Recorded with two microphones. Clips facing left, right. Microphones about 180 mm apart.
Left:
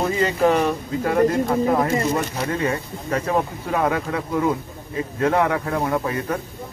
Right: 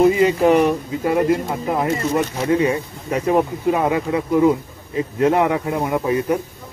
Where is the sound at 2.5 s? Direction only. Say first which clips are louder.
Right 8 dB; 15° right (ahead or behind).